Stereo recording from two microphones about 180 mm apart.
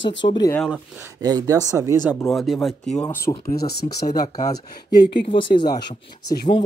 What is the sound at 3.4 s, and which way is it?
Speech, 60° left (ahead or behind).